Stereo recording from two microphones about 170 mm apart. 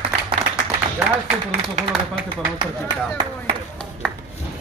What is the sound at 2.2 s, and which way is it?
Speech, 25° right (ahead or behind).